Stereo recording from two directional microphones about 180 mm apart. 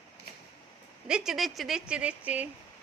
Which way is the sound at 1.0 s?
5° right (ahead or behind).